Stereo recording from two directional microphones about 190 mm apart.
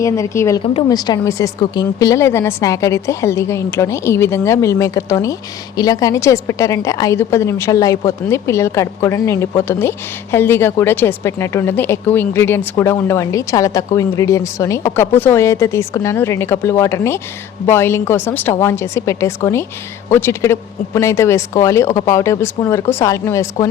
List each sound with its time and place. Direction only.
0.0 s speech: 15° left (ahead or behind)
0.6 s a woman's voice: 30° left (ahead or behind)